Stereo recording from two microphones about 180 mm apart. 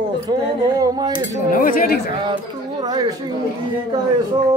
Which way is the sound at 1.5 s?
50° left (ahead or behind).